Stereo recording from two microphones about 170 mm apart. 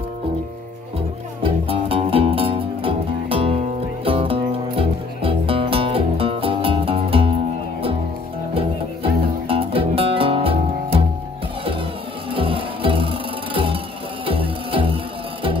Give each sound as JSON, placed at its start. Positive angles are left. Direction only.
{"t": 1.4, "sound": "music", "side_deg": -35}
{"t": 8.5, "sound": "music", "side_deg": -35}
{"t": 12.3, "sound": "music", "side_deg": -30}